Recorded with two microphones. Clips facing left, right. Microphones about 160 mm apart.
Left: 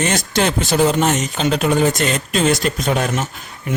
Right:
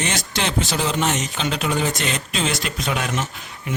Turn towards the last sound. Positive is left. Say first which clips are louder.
# left 5 dB
turn(degrees=45)  # may be behind; listen again after turning